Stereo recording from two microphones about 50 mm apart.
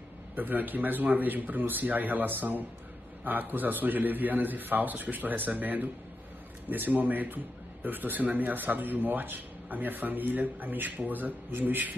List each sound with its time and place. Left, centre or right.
0.4 s speech: right